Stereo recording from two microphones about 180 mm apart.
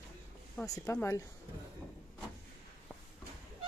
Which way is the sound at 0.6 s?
15° left (ahead or behind).